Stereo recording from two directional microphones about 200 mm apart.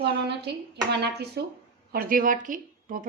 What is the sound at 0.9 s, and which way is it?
Speech, 55° right (ahead or behind).